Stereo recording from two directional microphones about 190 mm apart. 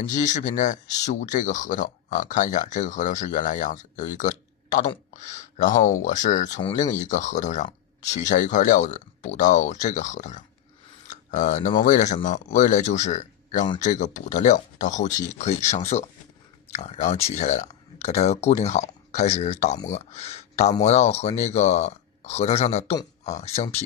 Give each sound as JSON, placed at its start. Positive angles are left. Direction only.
{"t": 0.1, "sound": "speech", "side_deg": 40}
{"t": 11.1, "sound": "a sound", "side_deg": 40}
{"t": 11.8, "sound": "speech", "side_deg": 40}